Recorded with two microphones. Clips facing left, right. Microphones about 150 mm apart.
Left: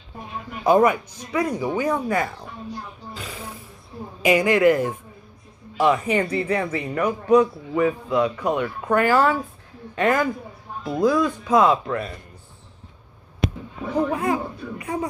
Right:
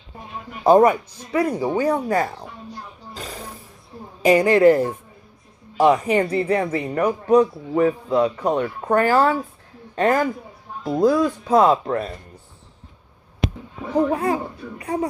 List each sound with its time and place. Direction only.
0.7 s speech: 35° right (ahead or behind)
3.1 s roaring cats: 40° right (ahead or behind)
4.2 s speech: 35° right (ahead or behind)
14.1 s speech: 30° right (ahead or behind)